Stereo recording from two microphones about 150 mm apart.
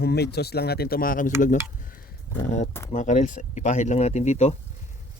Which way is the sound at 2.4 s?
55° left (ahead or behind).